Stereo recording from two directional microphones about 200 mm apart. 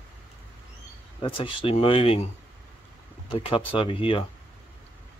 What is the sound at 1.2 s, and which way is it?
Speech, 25° left (ahead or behind).